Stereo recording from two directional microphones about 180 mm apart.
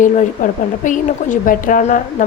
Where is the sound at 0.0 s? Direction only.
45° left (ahead or behind).